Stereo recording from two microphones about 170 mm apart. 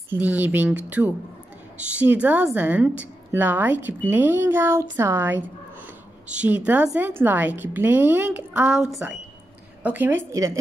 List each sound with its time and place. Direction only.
0.1 s a woman's voice: 10° right (ahead or behind)